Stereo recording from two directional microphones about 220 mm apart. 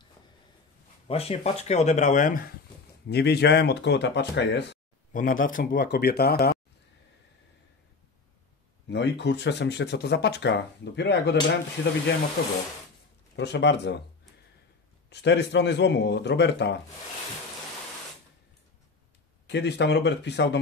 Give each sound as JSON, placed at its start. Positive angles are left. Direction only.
{"t": 1.0, "sound": "speech", "side_deg": 25}
{"t": 5.1, "sound": "speech", "side_deg": 40}
{"t": 8.8, "sound": "speech", "side_deg": 50}
{"t": 12.4, "sound": "speech", "side_deg": 45}
{"t": 15.0, "sound": "speech", "side_deg": 50}
{"t": 19.4, "sound": "speech", "side_deg": 50}